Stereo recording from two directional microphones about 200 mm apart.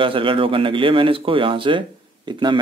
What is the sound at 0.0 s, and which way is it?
Speech, 25° right (ahead or behind).